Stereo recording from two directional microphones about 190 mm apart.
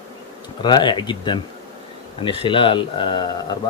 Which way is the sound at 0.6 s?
25° left (ahead or behind).